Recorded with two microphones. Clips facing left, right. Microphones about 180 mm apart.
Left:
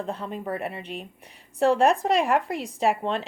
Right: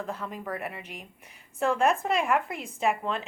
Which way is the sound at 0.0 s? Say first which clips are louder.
Left 4 dB; 30° left (ahead or behind).